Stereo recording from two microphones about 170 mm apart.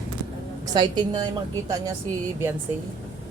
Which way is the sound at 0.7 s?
25° right (ahead or behind).